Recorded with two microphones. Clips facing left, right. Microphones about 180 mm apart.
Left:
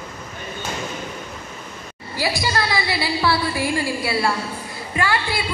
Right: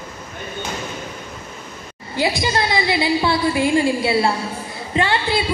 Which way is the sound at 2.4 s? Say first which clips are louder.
Right 3 dB; 20° right (ahead or behind).